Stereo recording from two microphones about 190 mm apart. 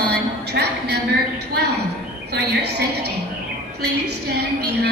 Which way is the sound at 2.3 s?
60° right (ahead or behind).